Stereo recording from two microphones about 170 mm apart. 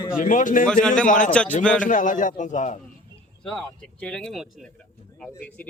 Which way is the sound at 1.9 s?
50° left (ahead or behind).